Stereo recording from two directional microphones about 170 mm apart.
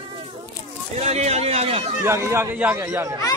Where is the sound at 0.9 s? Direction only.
40° right (ahead or behind).